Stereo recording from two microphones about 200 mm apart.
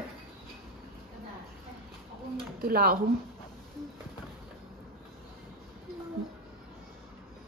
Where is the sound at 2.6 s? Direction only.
50° right (ahead or behind).